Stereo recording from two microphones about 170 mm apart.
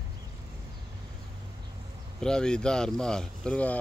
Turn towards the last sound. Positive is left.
turn(degrees=5)  # may be behind; listen again after turning